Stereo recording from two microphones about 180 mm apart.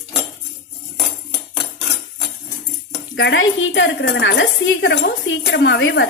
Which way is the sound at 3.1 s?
85° left.